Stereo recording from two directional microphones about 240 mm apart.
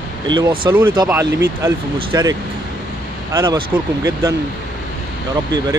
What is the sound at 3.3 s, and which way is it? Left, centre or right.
Speech, centre.